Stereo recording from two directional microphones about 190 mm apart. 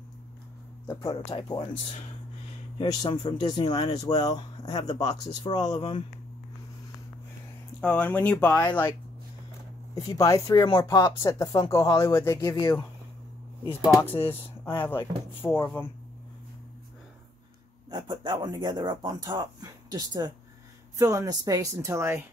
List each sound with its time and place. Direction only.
1.1 s speech: 25° left (ahead or behind)
2.8 s speech: 25° left (ahead or behind)
5.8 s speech: 30° left (ahead or behind)
7.8 s speech: 10° left (ahead or behind)
9.9 s speech: 15° left (ahead or behind)
14.6 s speech: 10° left (ahead or behind)
17.8 s speech: 25° right (ahead or behind)